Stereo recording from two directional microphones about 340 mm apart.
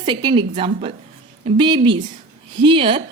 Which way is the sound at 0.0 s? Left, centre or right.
Centre.